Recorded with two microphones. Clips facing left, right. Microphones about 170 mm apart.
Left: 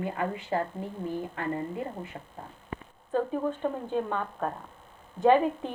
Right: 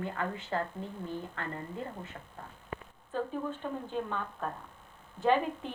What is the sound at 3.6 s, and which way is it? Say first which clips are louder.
A woman's voice: left 6 dB; 55° left (ahead or behind).